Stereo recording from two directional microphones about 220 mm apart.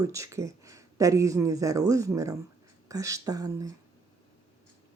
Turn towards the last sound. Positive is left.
turn(degrees=-15)  # may be behind; listen again after turning